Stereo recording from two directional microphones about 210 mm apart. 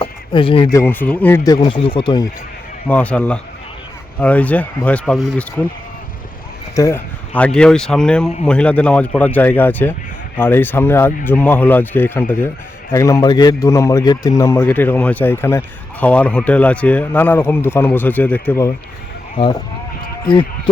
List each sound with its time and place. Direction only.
0.0 s speech: 25° left (ahead or behind)
2.8 s a man's voice: 5° left (ahead or behind)
6.7 s a man's voice: 10° left (ahead or behind)